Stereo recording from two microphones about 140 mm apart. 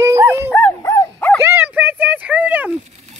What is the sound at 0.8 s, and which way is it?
Dog, 20° left (ahead or behind).